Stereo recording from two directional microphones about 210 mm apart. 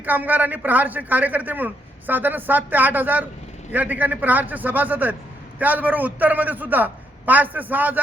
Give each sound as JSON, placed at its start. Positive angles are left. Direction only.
{"t": 0.0, "sound": "a man's voice", "side_deg": -10}